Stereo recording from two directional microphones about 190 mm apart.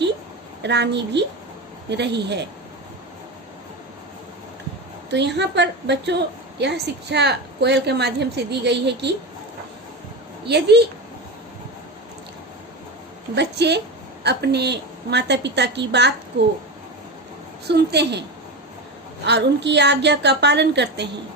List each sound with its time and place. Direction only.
0.6 s a woman's voice: 65° right (ahead or behind)
5.1 s a woman's voice: 65° right (ahead or behind)
10.4 s a woman's voice: 60° right (ahead or behind)
13.3 s a woman's voice: 65° right (ahead or behind)
17.7 s a woman's voice: 60° right (ahead or behind)